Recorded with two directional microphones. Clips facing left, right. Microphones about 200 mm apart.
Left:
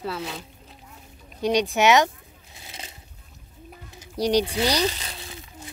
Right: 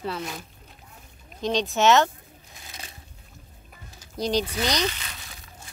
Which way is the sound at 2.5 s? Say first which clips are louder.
Left 2 dB; 25° left (ahead or behind).